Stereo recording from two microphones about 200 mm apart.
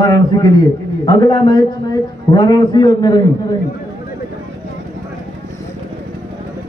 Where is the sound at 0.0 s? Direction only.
20° left (ahead or behind).